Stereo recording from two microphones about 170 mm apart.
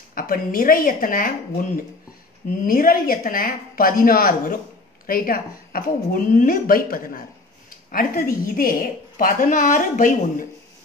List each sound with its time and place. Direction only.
0.1 s a woman's voice: 55° left (ahead or behind)
2.6 s a woman's voice: 55° left (ahead or behind)